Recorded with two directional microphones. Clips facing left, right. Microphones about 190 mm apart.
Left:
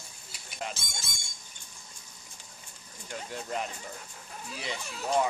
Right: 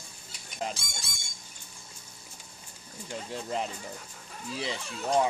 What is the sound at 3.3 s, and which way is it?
Speech, 30° right (ahead or behind).